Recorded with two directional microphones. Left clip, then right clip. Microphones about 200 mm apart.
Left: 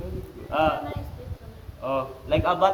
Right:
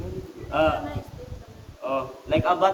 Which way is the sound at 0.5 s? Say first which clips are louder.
Right 1 dB; 15° left (ahead or behind).